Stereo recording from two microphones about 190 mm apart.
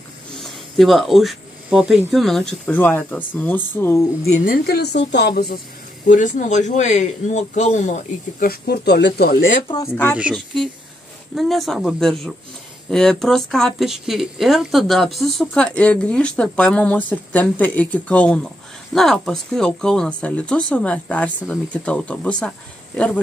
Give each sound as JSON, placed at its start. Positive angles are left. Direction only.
{"t": 0.4, "sound": "speech", "side_deg": 0}
{"t": 4.3, "sound": "a woman's voice", "side_deg": 50}
{"t": 5.3, "sound": "speech", "side_deg": 50}
{"t": 6.0, "sound": "speech", "side_deg": 40}
{"t": 10.1, "sound": "speech", "side_deg": 0}